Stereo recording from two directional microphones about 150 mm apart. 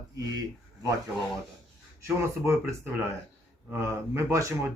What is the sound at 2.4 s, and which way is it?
Speech, 20° right (ahead or behind).